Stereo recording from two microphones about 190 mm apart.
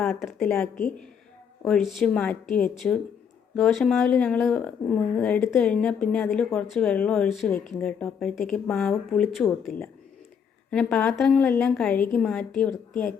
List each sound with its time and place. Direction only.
0.2 s speech: centre (ahead or behind)
7.5 s speech: 40° left (ahead or behind)
7.8 s speech: 5° left (ahead or behind)